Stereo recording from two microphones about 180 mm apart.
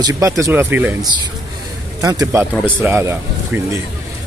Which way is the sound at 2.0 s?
20° right (ahead or behind).